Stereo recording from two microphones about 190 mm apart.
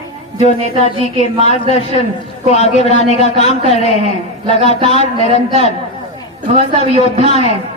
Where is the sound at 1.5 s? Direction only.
35° left (ahead or behind).